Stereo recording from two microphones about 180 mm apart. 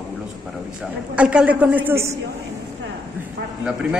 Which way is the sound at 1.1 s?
5° right (ahead or behind).